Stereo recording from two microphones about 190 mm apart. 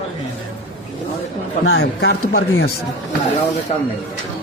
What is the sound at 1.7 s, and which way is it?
Speech, 55° left (ahead or behind).